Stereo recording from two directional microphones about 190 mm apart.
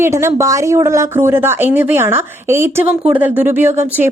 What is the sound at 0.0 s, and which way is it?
Speech, 15° right (ahead or behind).